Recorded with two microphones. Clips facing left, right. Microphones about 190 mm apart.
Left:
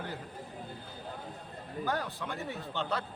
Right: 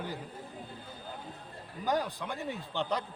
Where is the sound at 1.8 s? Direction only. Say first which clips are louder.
Right 3 dB; 15° right (ahead or behind).